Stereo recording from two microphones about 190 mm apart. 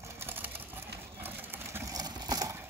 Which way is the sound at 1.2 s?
10° right (ahead or behind).